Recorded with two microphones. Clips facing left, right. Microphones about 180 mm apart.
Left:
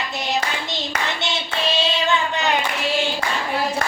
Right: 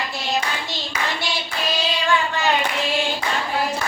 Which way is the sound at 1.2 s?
25° left (ahead or behind).